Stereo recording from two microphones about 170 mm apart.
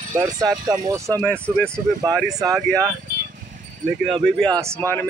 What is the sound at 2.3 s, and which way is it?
Speech, 20° right (ahead or behind).